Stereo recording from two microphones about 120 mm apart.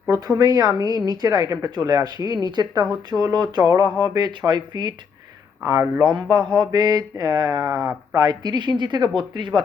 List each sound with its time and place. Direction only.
0.1 s a woman's voice: 30° right (ahead or behind)
5.6 s speech: 25° right (ahead or behind)
6.2 s a woman's voice: 35° right (ahead or behind)